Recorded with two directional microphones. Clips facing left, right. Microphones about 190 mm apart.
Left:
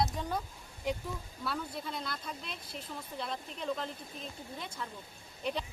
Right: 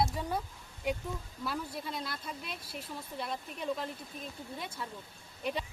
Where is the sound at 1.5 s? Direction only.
5° right (ahead or behind).